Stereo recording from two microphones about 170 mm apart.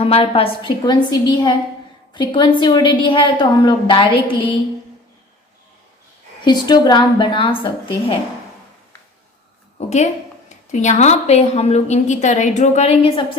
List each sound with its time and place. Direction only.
0.0 s a woman's voice: 35° left (ahead or behind)
6.4 s a woman's voice: 25° left (ahead or behind)
9.7 s a woman's voice: 40° left (ahead or behind)